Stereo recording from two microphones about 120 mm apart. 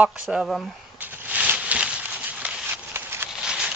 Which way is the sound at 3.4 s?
5° right (ahead or behind).